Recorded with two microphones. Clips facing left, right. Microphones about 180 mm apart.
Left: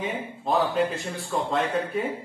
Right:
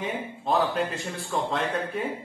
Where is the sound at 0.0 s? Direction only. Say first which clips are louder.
Left 1 dB; centre (ahead or behind).